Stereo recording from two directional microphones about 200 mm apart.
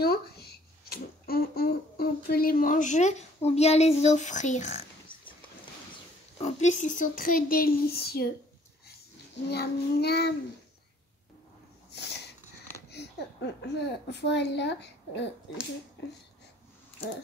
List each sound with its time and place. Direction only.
0.0 s speech: 50° left (ahead or behind)
6.4 s speech: 35° left (ahead or behind)
9.5 s speech: 55° left (ahead or behind)
11.9 s dog: 55° left (ahead or behind)
12.9 s a child's voice: 60° left (ahead or behind)